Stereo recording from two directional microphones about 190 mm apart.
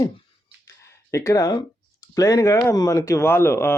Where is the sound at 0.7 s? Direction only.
15° left (ahead or behind).